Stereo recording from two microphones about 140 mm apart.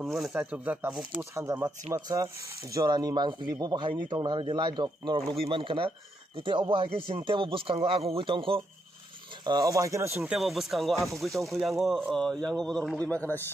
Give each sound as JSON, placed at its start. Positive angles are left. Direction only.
{"t": 0.0, "sound": "speech", "side_deg": 0}
{"t": 0.3, "sound": "speech", "side_deg": -10}
{"t": 10.3, "sound": "a man's voice", "side_deg": 0}